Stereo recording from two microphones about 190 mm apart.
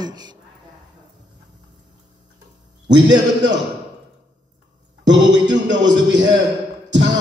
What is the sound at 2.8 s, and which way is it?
Speech, 70° right (ahead or behind).